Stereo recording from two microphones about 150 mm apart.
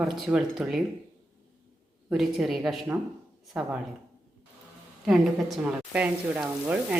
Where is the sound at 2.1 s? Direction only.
Centre (ahead or behind).